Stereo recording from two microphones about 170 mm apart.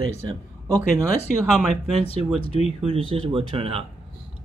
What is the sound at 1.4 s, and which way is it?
Speech, centre (ahead or behind).